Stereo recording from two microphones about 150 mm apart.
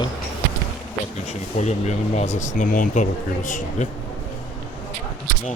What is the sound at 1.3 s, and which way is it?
Speech, 50° left (ahead or behind).